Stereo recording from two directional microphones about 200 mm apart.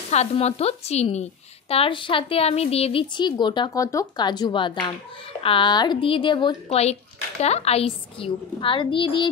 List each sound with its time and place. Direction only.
0.1 s a woman's voice: 35° left (ahead or behind)